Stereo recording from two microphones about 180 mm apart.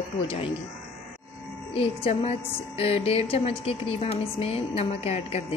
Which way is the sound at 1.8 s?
30° left (ahead or behind).